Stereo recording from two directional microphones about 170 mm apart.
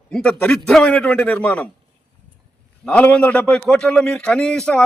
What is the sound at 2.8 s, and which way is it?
A man's voice, 5° left (ahead or behind).